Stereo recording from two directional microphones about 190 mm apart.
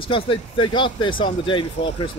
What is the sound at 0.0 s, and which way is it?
Speech, 25° left (ahead or behind).